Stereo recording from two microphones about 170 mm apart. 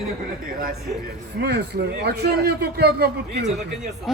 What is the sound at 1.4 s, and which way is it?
A man's voice, 75° right (ahead or behind).